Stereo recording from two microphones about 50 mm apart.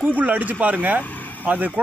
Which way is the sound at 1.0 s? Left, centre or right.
Left.